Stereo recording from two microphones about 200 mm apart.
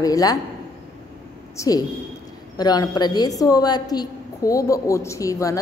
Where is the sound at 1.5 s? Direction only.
15° left (ahead or behind).